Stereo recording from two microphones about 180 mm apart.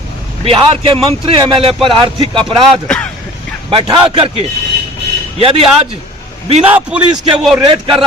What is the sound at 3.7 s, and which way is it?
A man's voice, 30° right (ahead or behind).